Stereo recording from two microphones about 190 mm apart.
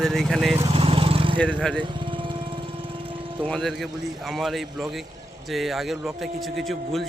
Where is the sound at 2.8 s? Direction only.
30° right (ahead or behind).